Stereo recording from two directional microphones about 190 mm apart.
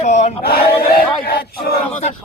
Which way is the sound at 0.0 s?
35° left (ahead or behind).